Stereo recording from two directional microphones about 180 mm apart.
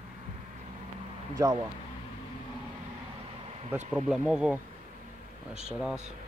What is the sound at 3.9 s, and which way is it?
Speech, 5° right (ahead or behind).